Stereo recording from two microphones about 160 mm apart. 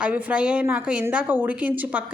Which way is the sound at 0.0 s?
10° right (ahead or behind).